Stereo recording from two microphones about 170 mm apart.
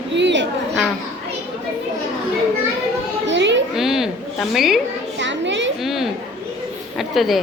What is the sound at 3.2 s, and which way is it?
Children playing, 90° right.